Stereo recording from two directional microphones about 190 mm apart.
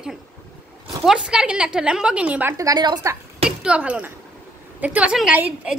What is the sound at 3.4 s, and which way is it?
A woman's voice, 5° right (ahead or behind).